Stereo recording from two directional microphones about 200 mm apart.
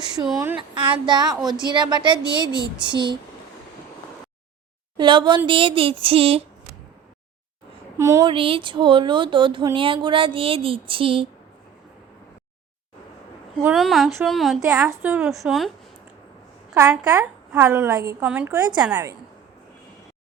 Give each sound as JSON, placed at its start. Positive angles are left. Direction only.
{"t": 0.3, "sound": "speech", "side_deg": -20}
{"t": 4.9, "sound": "speech", "side_deg": -25}
{"t": 7.9, "sound": "a woman's voice", "side_deg": -15}
{"t": 8.3, "sound": "speech", "side_deg": -25}
{"t": 13.6, "sound": "speech", "side_deg": -5}
{"t": 16.7, "sound": "a woman's voice", "side_deg": -15}